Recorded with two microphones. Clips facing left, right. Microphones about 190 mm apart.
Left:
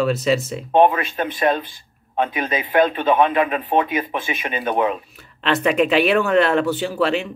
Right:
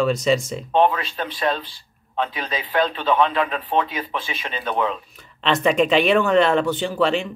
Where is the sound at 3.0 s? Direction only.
15° left (ahead or behind).